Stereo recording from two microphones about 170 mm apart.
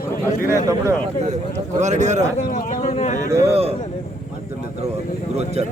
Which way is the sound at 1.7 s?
45° right (ahead or behind).